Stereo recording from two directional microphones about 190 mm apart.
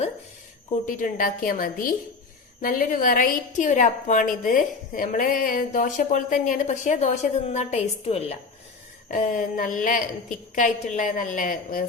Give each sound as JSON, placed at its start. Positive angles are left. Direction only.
{"t": 0.7, "sound": "a woman's voice", "side_deg": 45}